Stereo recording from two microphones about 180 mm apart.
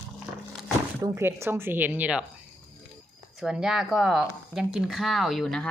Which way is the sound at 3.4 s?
5° right (ahead or behind).